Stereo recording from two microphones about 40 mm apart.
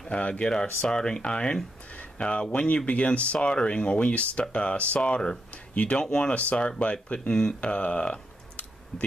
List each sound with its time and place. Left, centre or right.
0.1 s speech: left
3.3 s speech: left
5.5 s a sound: left
5.9 s speech: left